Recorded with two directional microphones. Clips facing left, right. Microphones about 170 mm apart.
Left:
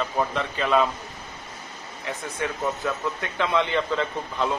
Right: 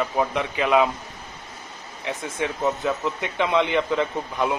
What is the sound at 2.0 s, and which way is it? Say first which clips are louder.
Speech: right 2 dB; 20° right (ahead or behind).